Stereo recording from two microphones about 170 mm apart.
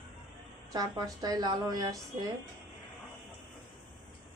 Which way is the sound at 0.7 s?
20° right (ahead or behind).